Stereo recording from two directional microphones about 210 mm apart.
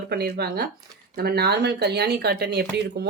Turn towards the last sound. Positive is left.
turn(degrees=-55)  # may be behind; listen again after turning